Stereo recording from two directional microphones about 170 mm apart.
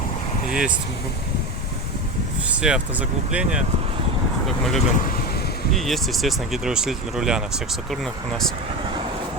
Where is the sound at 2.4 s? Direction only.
5° right (ahead or behind).